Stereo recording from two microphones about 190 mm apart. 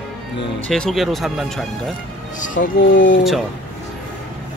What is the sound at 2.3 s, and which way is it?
Speech, 45° left (ahead or behind).